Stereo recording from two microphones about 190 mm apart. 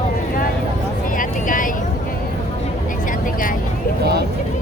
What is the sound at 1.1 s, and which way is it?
Vehicle, 45° left (ahead or behind).